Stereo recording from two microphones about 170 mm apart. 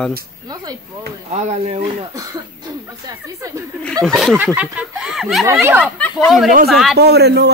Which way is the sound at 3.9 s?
5° left (ahead or behind).